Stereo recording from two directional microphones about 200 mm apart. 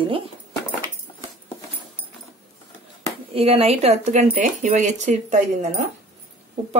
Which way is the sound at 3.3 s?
30° right (ahead or behind).